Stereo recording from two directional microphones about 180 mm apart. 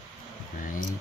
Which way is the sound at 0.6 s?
50° left (ahead or behind).